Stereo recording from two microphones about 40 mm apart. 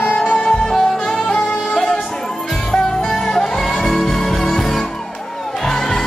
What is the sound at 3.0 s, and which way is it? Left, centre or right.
Music, centre.